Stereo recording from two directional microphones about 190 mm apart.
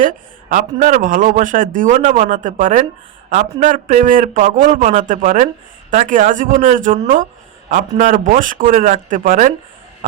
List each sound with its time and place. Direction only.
0.5 s a man's voice: 40° right (ahead or behind)